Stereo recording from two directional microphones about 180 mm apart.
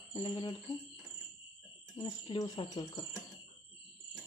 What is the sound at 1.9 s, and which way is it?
Speech, 25° left (ahead or behind).